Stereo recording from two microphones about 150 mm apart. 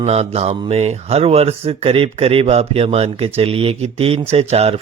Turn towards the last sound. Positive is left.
turn(degrees=-45)  # may be behind; listen again after turning